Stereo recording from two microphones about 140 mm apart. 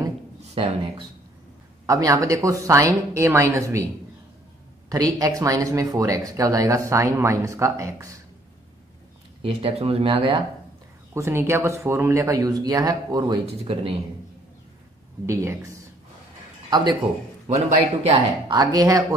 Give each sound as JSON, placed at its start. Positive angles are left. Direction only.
{"t": 0.6, "sound": "speech", "side_deg": -40}
{"t": 1.9, "sound": "speech", "side_deg": -25}
{"t": 4.8, "sound": "speech", "side_deg": -25}
{"t": 9.4, "sound": "speech", "side_deg": -45}
{"t": 11.1, "sound": "speech", "side_deg": -20}
{"t": 15.2, "sound": "speech", "side_deg": -20}
{"t": 17.6, "sound": "speech", "side_deg": -45}
{"t": 18.5, "sound": "speech", "side_deg": -30}